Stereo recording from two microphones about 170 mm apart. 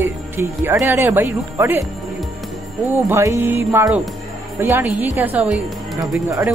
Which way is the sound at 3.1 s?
15° right (ahead or behind).